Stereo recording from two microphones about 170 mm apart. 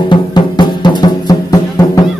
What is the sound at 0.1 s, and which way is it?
Music, 25° left (ahead or behind).